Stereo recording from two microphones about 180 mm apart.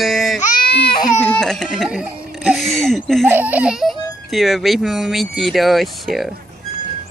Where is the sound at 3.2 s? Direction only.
10° right (ahead or behind).